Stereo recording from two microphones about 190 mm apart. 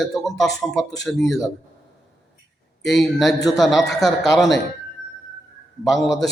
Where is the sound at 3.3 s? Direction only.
20° left (ahead or behind).